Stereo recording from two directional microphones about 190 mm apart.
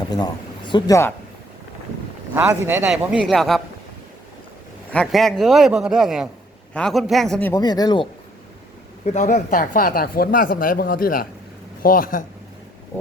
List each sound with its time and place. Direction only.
0.1 s speech: 20° left (ahead or behind)
2.3 s a man's voice: 10° right (ahead or behind)
4.9 s a man's voice: 5° left (ahead or behind)
7.5 s speech: 20° left (ahead or behind)
9.0 s speech: 40° left (ahead or behind)